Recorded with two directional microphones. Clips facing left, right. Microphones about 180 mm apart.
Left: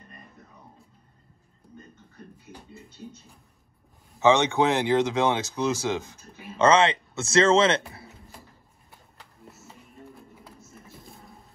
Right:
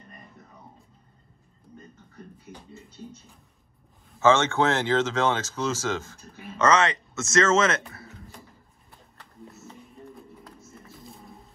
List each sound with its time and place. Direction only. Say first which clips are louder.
4.2 s speech: left 1 dB; 15° left (ahead or behind)
6.6 s speech: left 2 dB; 30° left (ahead or behind)
9.2 s music: right 4 dB; centre (ahead or behind)